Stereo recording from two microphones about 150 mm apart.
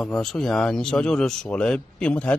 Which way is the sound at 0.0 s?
Centre (ahead or behind).